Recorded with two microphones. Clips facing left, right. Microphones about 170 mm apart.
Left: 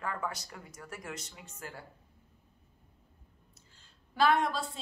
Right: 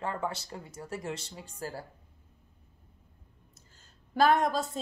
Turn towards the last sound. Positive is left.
turn(degrees=-45)  # may be behind; listen again after turning